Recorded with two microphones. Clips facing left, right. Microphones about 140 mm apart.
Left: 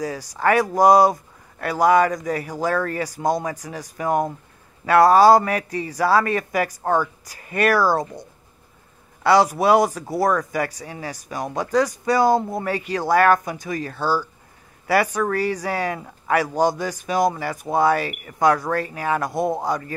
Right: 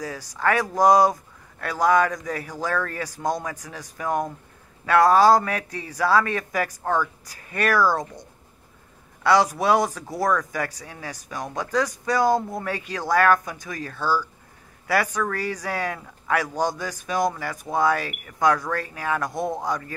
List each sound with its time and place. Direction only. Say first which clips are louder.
0.0 s speech: left 3 dB; 10° left (ahead or behind)